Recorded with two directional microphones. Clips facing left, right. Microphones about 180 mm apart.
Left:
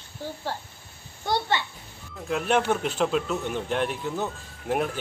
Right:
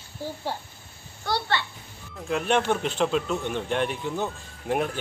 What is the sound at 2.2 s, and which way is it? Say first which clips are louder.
A man's voice: even; centre (ahead or behind).